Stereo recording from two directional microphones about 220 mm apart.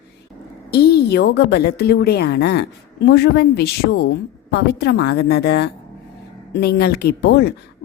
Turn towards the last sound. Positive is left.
turn(degrees=50)  # may be behind; listen again after turning